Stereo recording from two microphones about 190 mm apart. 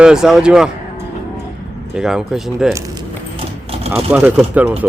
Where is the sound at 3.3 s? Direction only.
30° right (ahead or behind).